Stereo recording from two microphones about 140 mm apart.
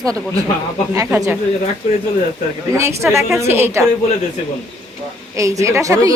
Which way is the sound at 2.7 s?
20° right (ahead or behind).